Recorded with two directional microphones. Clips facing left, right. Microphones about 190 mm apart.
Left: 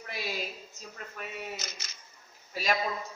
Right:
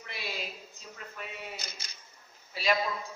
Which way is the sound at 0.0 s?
45° left (ahead or behind).